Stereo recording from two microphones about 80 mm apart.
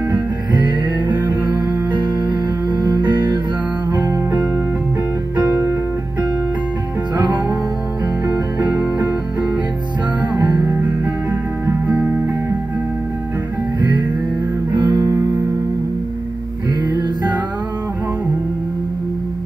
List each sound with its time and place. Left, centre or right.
0.5 s music: right
1.3 s music: right
7.2 s music: right
8.7 s music: right
10.3 s music: right
11.6 s guitar: right
13.7 s music: right
16.8 s music: right